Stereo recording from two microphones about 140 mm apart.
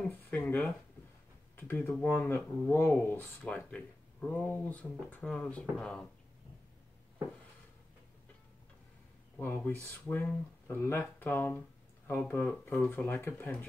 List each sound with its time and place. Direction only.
0.0 s a sound: 10° left (ahead or behind)
1.6 s speech: 15° left (ahead or behind)
9.4 s speech: 15° left (ahead or behind)